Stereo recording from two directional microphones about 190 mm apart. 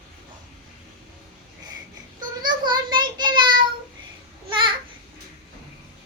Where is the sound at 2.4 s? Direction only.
25° right (ahead or behind).